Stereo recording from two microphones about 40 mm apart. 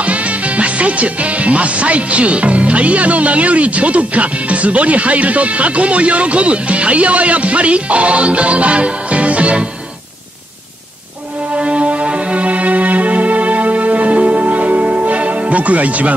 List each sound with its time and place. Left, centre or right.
0.0 s speech: right
11.5 s music: right